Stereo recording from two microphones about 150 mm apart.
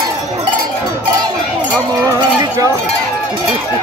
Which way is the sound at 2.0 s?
20° right (ahead or behind).